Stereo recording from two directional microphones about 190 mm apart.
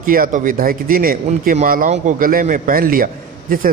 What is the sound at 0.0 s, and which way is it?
Speech, 45° right (ahead or behind).